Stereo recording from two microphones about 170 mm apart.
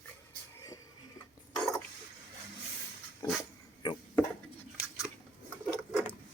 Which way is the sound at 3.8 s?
25° left (ahead or behind).